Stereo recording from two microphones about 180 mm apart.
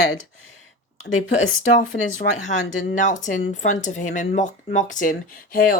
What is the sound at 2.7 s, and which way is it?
A woman's voice, 45° left (ahead or behind).